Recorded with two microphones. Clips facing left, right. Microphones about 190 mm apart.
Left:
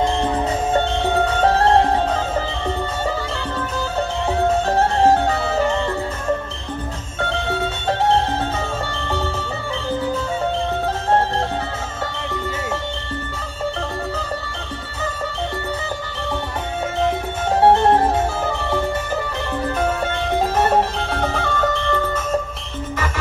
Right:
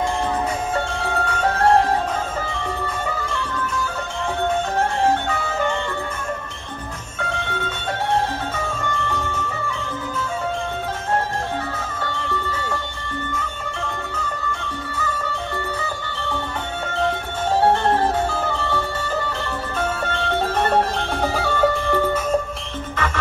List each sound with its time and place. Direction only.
0.7 s music: 35° left (ahead or behind)
3.3 s music: 35° left (ahead or behind)
7.2 s music: 30° left (ahead or behind)
12.0 s music: 20° left (ahead or behind)
14.1 s music: 30° left (ahead or behind)
17.6 s music: 25° left (ahead or behind)
20.1 s music: 10° left (ahead or behind); by 22.0 s 10° right (ahead or behind)